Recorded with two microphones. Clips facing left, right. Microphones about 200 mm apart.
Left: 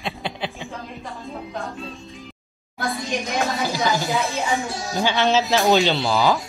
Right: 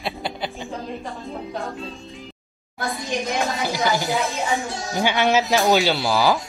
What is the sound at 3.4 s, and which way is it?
Speech, 15° right (ahead or behind).